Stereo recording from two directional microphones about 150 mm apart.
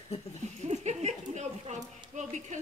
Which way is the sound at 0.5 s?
50° right (ahead or behind).